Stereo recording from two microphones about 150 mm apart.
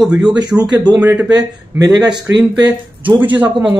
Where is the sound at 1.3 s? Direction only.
25° right (ahead or behind); by 3.7 s 10° right (ahead or behind).